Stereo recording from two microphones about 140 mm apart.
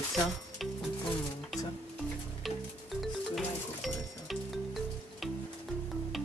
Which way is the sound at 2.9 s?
Centre (ahead or behind).